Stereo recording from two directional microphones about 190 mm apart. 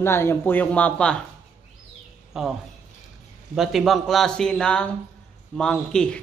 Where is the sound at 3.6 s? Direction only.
Centre (ahead or behind).